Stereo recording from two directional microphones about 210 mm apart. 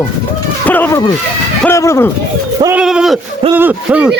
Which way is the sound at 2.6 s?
10° right (ahead or behind).